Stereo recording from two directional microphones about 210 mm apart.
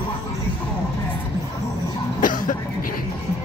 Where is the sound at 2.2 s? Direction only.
40° left (ahead or behind).